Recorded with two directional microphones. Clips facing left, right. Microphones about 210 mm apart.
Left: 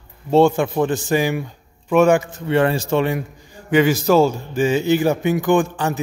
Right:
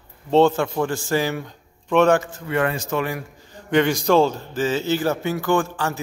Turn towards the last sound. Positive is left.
turn(degrees=20)  # may be behind; listen again after turning